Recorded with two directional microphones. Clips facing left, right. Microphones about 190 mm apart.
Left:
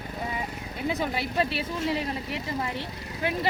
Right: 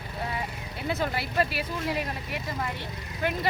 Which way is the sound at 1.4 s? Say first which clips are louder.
Even; 25° left (ahead or behind).